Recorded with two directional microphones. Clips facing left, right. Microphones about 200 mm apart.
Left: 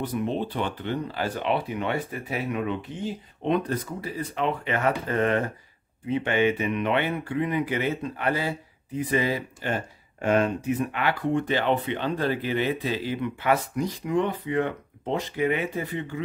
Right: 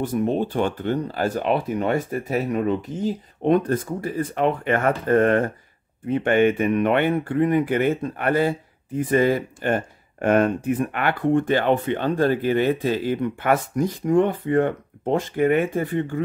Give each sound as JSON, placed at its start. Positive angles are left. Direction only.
{"t": 0.0, "sound": "speech", "side_deg": -45}